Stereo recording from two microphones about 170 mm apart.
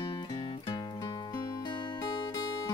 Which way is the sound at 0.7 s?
25° left (ahead or behind).